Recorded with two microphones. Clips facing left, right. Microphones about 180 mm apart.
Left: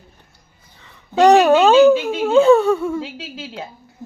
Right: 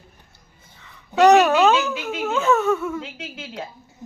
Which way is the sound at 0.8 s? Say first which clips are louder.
Left 2 dB; 30° left (ahead or behind).